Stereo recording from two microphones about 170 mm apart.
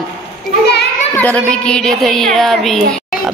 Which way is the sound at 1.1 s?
10° left (ahead or behind).